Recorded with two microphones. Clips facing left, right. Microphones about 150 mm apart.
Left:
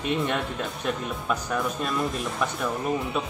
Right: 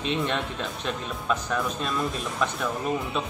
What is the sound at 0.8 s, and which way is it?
Speech, 5° left (ahead or behind).